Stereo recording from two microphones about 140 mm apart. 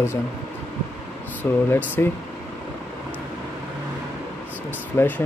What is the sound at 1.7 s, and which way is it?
Speech, 15° left (ahead or behind).